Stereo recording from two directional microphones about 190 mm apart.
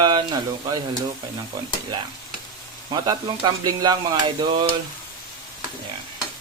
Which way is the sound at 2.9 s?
20° right (ahead or behind).